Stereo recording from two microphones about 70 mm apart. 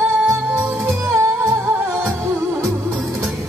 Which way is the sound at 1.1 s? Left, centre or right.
Right.